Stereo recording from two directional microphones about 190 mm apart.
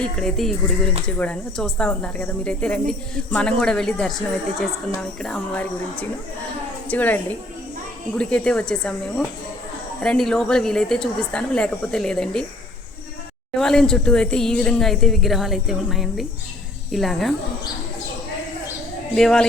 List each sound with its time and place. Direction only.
0.0 s speech: centre (ahead or behind)
5.2 s speech: 5° left (ahead or behind)
13.6 s speech: 5° left (ahead or behind)
19.1 s speech: 5° left (ahead or behind)